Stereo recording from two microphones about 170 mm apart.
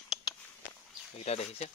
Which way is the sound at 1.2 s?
40° left (ahead or behind).